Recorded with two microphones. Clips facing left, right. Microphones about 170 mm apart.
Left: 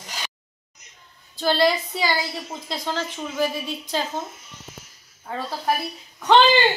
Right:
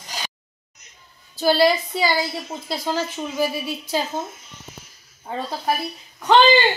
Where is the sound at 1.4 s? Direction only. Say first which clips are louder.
Right 3 dB; 5° right (ahead or behind).